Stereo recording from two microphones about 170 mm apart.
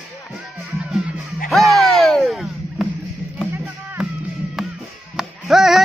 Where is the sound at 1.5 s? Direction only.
Centre (ahead or behind).